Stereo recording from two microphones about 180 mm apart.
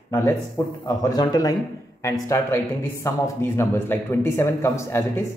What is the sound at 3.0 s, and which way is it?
Speech, 15° left (ahead or behind).